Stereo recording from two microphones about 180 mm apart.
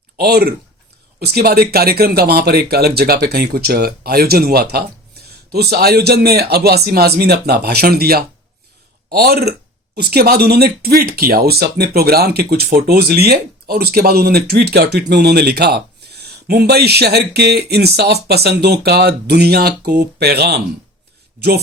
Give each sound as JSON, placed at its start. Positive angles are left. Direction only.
{"t": 0.2, "sound": "speech", "side_deg": -60}